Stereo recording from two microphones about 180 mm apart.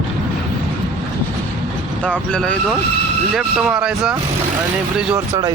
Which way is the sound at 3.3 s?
5° right (ahead or behind).